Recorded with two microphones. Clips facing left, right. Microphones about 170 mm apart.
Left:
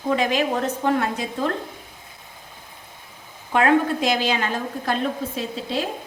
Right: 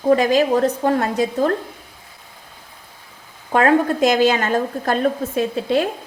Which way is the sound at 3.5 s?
40° right (ahead or behind).